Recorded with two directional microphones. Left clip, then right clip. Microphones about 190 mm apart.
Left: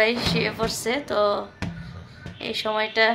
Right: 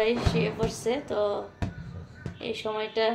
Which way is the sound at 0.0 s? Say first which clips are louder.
Left 4 dB; 10° left (ahead or behind).